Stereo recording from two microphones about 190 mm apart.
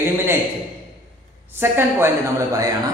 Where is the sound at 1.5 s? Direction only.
10° right (ahead or behind).